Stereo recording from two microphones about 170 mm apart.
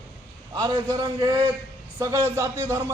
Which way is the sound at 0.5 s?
25° right (ahead or behind).